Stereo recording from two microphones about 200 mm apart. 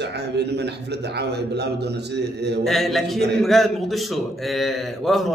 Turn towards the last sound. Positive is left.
turn(degrees=0)  # may be behind; listen again after turning